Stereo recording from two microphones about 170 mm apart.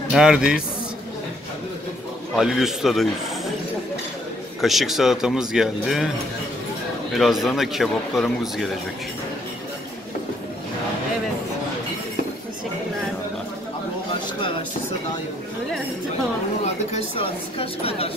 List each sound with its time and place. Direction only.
0.1 s speech: 5° right (ahead or behind)
2.3 s speech: centre (ahead or behind)
4.6 s speech: centre (ahead or behind)
7.2 s speech: centre (ahead or behind)
16.6 s a woman's voice: 35° left (ahead or behind)